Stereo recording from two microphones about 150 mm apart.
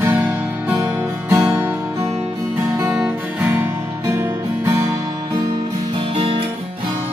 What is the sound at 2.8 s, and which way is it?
Music, 10° right (ahead or behind).